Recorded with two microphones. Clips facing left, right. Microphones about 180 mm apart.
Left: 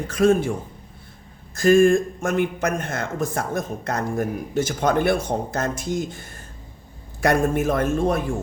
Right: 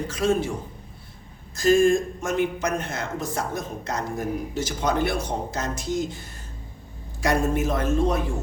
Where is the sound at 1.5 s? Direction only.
55° left (ahead or behind).